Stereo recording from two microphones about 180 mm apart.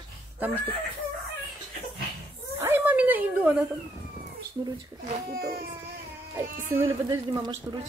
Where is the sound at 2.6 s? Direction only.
10° right (ahead or behind).